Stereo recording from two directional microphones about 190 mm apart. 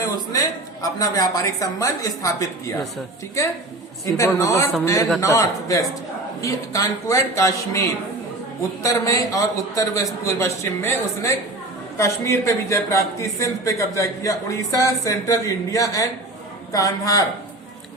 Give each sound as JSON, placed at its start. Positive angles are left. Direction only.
{"t": 0.8, "sound": "speech", "side_deg": 20}